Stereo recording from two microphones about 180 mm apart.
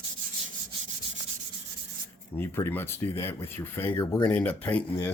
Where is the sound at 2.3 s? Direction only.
10° left (ahead or behind).